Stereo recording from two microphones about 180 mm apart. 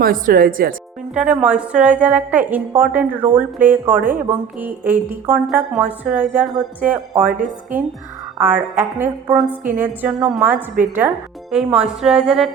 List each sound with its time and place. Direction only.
0.0 s speech: 50° right (ahead or behind)
1.1 s a woman's voice: 5° right (ahead or behind)
11.5 s speech: 5° right (ahead or behind)